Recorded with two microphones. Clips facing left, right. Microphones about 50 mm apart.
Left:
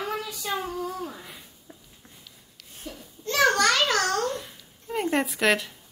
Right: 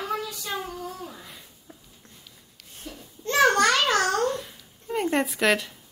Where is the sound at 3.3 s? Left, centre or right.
Right.